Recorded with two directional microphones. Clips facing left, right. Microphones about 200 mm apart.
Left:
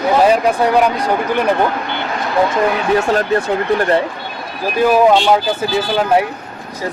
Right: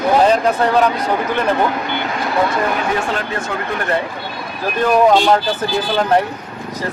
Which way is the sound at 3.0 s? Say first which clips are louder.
Left 7 dB; 40° left (ahead or behind).